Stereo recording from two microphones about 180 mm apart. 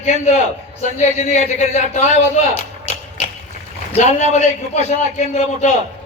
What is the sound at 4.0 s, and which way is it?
A man's voice, 40° left (ahead or behind).